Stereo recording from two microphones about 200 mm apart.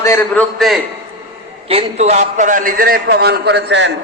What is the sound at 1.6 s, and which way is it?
A man's voice, 30° right (ahead or behind).